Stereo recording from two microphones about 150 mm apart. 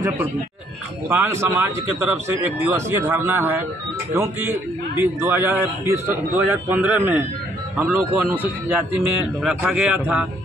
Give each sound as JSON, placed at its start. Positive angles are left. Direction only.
{"t": 1.0, "sound": "speech", "side_deg": -15}